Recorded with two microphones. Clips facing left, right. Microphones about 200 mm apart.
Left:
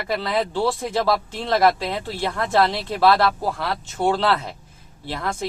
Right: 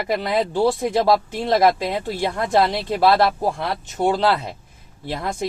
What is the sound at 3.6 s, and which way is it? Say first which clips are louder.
Speech: right 1 dB; 20° right (ahead or behind).